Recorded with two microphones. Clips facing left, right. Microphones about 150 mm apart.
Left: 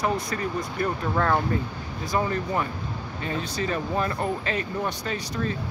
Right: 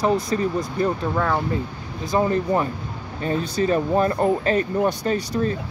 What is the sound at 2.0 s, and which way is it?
Speech, 30° right (ahead or behind).